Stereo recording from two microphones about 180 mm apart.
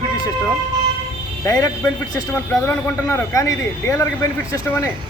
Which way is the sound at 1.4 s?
20° left (ahead or behind).